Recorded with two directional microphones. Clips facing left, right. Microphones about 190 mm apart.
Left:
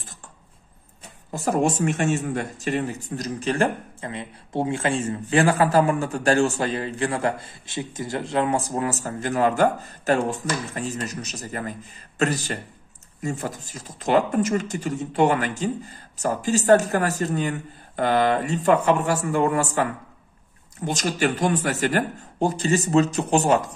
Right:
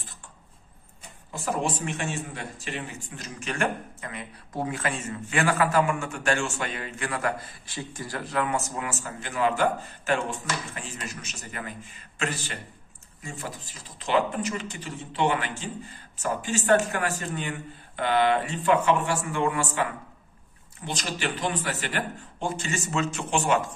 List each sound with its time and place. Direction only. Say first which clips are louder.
1.3 s a man's voice: left 7 dB; 40° left (ahead or behind)